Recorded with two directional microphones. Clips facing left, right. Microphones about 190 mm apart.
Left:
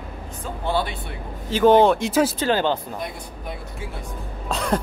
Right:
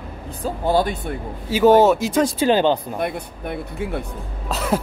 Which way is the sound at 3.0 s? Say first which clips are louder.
Right 6 dB; 60° right (ahead or behind).